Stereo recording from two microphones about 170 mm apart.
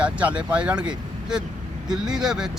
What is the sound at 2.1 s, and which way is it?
Speech, 5° right (ahead or behind).